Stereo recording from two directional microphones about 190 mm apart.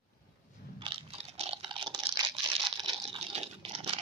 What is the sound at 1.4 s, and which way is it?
Typing, 30° right (ahead or behind).